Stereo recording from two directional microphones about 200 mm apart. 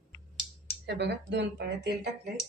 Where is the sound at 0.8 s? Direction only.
60° right (ahead or behind).